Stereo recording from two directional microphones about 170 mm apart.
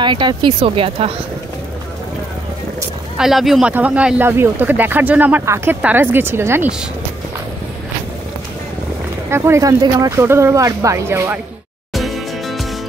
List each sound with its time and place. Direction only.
0.0 s speech: 25° right (ahead or behind)
3.2 s speech: centre (ahead or behind)
9.3 s speech: 15° right (ahead or behind)
11.9 s music: centre (ahead or behind)